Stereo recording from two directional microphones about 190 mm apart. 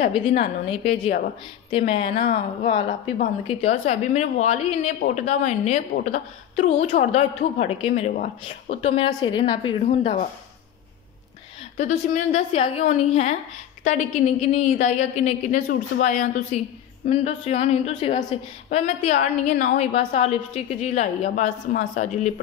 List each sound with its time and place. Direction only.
0.0 s a woman's voice: 35° left (ahead or behind)
8.5 s a woman's voice: 30° left (ahead or behind)
9.8 s a woman's voice: 40° left (ahead or behind)
11.7 s a woman's voice: 40° left (ahead or behind)